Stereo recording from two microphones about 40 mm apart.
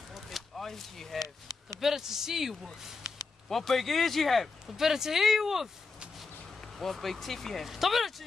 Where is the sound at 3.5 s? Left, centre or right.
Centre.